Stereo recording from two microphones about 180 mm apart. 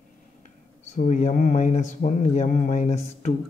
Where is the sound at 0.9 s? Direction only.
45° left (ahead or behind).